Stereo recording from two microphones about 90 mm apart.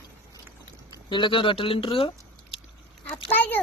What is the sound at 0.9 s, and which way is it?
Speech, 60° left (ahead or behind).